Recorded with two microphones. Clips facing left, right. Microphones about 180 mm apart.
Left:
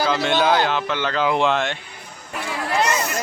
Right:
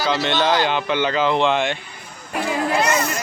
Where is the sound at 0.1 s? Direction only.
5° left (ahead or behind).